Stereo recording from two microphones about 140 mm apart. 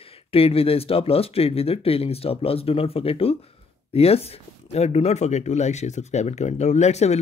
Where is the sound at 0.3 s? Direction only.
45° left (ahead or behind).